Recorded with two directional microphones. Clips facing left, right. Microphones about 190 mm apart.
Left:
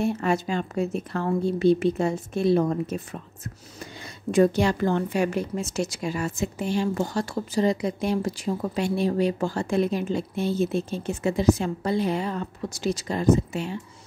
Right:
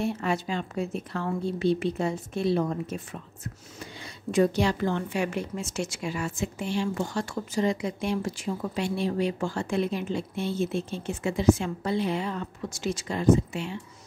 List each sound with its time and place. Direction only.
0.0 s a woman's voice: 45° left (ahead or behind)
4.3 s a woman's voice: 50° left (ahead or behind)